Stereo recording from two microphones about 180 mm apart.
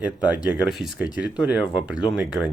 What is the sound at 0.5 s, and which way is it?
Speech, centre (ahead or behind).